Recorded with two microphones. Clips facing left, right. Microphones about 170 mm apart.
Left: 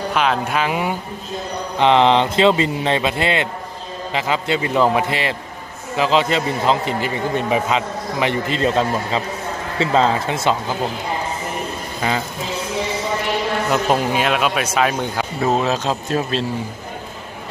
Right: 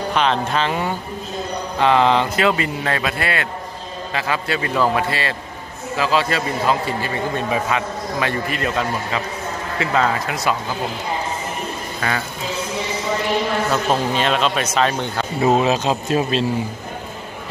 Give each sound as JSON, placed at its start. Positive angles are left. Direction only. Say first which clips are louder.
{"t": 0.1, "sound": "a man's voice", "louder": "even", "side_deg": 5}
{"t": 12.0, "sound": "a man's voice", "louder": "left 2 dB", "side_deg": 20}
{"t": 13.7, "sound": "speech", "louder": "left 1 dB", "side_deg": 15}
{"t": 15.4, "sound": "speech", "louder": "right 2 dB", "side_deg": -10}